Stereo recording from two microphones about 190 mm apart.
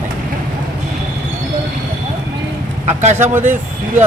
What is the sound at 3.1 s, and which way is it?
Speech, 10° right (ahead or behind).